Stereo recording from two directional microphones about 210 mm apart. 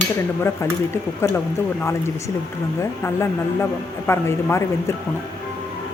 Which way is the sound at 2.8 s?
10° left (ahead or behind).